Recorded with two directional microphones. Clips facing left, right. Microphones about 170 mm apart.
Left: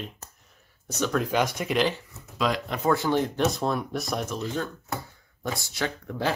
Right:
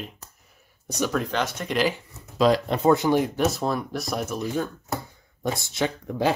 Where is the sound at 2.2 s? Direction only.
35° right (ahead or behind).